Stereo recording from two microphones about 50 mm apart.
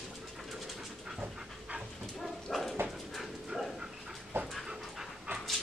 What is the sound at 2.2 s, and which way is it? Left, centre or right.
Dog, centre.